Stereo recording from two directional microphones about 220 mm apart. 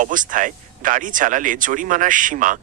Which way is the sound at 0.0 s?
35° right (ahead or behind).